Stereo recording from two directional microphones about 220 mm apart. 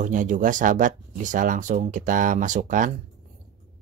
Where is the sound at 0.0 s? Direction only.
35° right (ahead or behind).